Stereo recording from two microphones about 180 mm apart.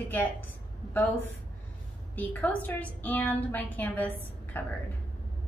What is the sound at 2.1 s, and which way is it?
A woman's voice, 10° left (ahead or behind).